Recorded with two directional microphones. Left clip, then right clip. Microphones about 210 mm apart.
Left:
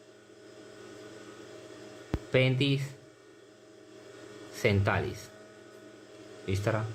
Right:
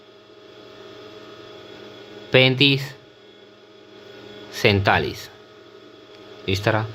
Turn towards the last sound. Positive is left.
turn(degrees=-35)  # may be behind; listen again after turning